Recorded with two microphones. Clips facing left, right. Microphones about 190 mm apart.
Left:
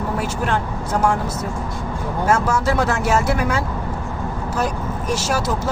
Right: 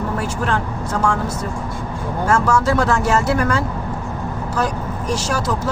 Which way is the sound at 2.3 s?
20° left (ahead or behind).